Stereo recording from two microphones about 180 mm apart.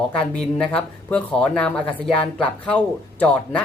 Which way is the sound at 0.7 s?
5° left (ahead or behind).